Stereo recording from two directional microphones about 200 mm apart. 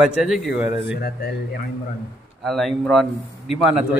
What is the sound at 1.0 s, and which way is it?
Speech, 50° left (ahead or behind).